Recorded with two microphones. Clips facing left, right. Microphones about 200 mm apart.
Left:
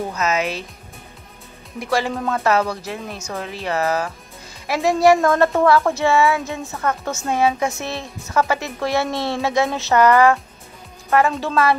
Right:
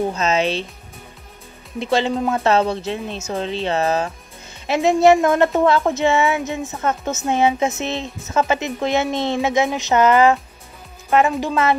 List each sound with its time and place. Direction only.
0.1 s speech: 30° right (ahead or behind)
1.8 s speech: 25° right (ahead or behind)